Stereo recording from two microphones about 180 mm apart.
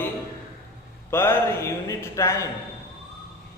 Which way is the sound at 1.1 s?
10° left (ahead or behind).